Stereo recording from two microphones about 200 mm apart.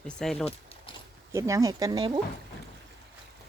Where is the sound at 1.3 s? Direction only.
15° right (ahead or behind).